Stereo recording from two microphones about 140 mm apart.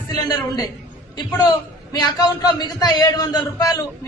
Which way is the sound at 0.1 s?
25° left (ahead or behind).